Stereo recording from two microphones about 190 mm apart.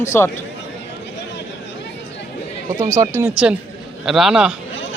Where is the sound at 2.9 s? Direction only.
15° right (ahead or behind).